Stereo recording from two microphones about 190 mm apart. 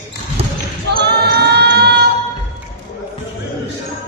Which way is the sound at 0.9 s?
60° right (ahead or behind).